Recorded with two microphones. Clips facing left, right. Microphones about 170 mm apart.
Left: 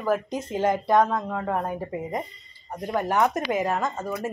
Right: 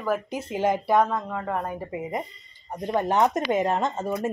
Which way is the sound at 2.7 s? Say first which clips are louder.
Right 1 dB; 20° right (ahead or behind).